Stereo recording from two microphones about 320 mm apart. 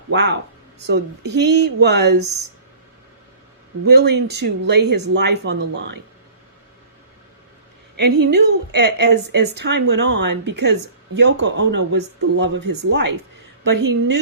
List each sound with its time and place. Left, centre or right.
0.1 s a woman's voice: right
3.8 s a woman's voice: right
7.9 s a woman's voice: right